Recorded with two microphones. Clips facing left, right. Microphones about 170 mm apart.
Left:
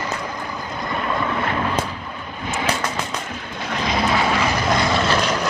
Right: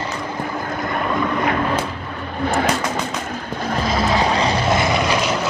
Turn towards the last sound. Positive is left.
turn(degrees=-10)  # may be behind; listen again after turning